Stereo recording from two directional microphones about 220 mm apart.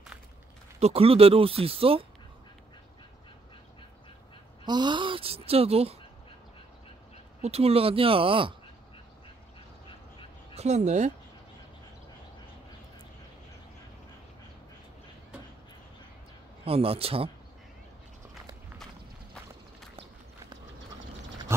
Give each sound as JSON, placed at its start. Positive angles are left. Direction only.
{"t": 0.7, "sound": "speech", "side_deg": -30}
{"t": 4.6, "sound": "a sound", "side_deg": -20}
{"t": 7.4, "sound": "speech", "side_deg": -25}
{"t": 10.5, "sound": "speech", "side_deg": -30}
{"t": 16.6, "sound": "speech", "side_deg": -25}
{"t": 21.5, "sound": "pig", "side_deg": -10}